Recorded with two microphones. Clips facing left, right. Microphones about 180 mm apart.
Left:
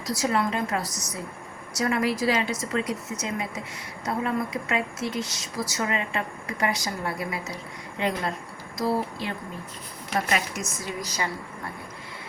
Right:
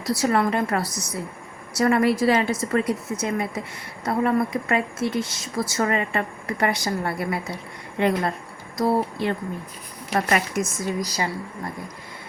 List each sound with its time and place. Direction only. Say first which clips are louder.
0.0 s a woman's voice: right 4 dB; 60° right (ahead or behind)
11.0 s speech: right 4 dB; 35° right (ahead or behind)